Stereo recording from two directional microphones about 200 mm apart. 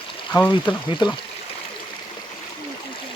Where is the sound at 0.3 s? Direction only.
10° left (ahead or behind).